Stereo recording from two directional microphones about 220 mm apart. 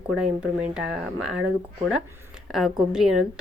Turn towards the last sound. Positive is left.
turn(degrees=0)  # may be behind; listen again after turning